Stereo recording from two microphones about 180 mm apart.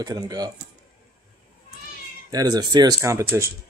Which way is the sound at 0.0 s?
20° right (ahead or behind).